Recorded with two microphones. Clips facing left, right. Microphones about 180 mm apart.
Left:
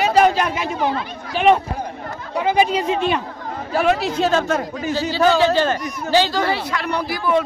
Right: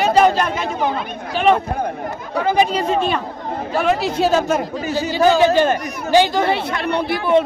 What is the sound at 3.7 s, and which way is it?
Speech, centre (ahead or behind).